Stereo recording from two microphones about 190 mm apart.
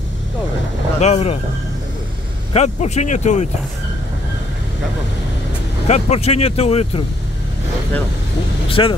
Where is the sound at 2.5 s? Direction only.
35° left (ahead or behind).